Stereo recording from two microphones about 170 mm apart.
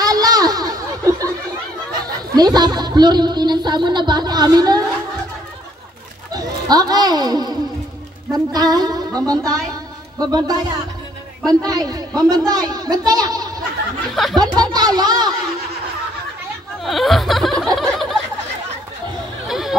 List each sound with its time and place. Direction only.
0.0 s a sound: 20° right (ahead or behind)
2.0 s speech: 25° right (ahead or behind)
6.3 s speech: 20° right (ahead or behind)
11.6 s speech: 20° right (ahead or behind)
14.1 s snicker: centre (ahead or behind)
14.4 s speech: 25° right (ahead or behind)
16.8 s snicker: centre (ahead or behind)
17.7 s a sound: centre (ahead or behind)
19.4 s a sound: centre (ahead or behind)